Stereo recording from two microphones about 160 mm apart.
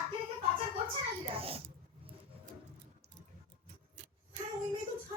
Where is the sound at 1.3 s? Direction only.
35° right (ahead or behind).